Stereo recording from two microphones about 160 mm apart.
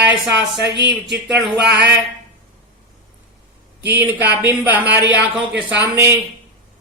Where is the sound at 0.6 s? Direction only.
90° right.